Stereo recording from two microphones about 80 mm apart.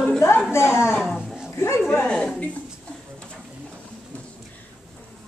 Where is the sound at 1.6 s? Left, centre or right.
Left.